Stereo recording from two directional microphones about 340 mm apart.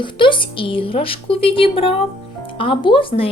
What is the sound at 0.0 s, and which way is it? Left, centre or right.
Speech, centre.